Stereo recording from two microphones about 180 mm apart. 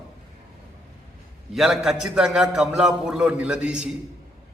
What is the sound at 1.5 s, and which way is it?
A man's voice, centre (ahead or behind).